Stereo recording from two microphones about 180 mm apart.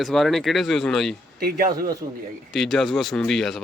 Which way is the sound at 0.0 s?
Centre (ahead or behind).